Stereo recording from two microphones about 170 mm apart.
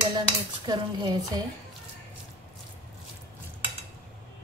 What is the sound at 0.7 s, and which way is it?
Speech, 25° right (ahead or behind).